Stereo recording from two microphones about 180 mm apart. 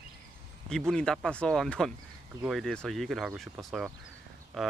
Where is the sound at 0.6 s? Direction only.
5° left (ahead or behind).